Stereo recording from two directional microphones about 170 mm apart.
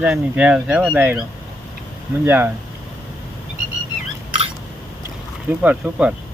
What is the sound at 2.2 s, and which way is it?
Speech, 10° right (ahead or behind).